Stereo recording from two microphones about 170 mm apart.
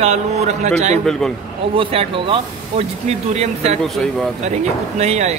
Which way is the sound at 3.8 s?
Centre (ahead or behind).